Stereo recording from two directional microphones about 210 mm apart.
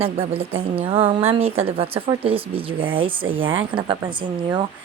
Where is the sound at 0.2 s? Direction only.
30° right (ahead or behind).